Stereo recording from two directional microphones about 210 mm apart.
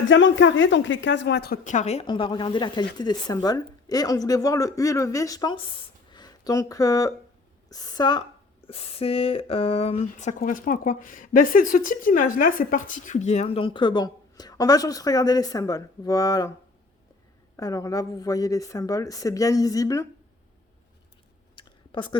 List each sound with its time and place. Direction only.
0.1 s a woman's voice: 65° left (ahead or behind)
1.6 s speech: 35° left (ahead or behind); by 16.5 s 15° left (ahead or behind)
17.6 s speech: 15° left (ahead or behind)
21.5 s a sound: 20° left (ahead or behind)